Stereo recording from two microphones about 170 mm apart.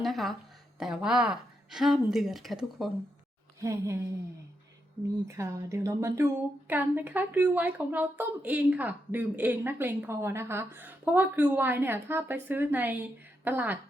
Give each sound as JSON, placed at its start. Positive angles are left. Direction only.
{"t": 0.0, "sound": "a sound", "side_deg": 0}
{"t": 0.8, "sound": "a woman's voice", "side_deg": -5}
{"t": 3.6, "sound": "speech", "side_deg": -15}
{"t": 5.4, "sound": "speech", "side_deg": -15}